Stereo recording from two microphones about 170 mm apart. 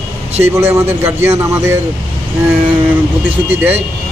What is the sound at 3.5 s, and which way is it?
Speech, 10° right (ahead or behind).